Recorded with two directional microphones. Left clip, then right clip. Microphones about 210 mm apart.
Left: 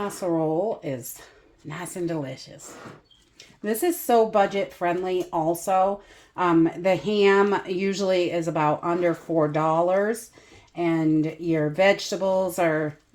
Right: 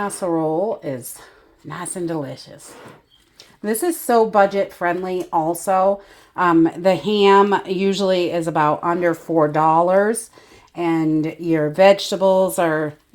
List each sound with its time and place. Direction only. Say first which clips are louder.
0.0 s speech: right 4 dB; 35° right (ahead or behind)
3.7 s speech: right 3 dB; 30° right (ahead or behind)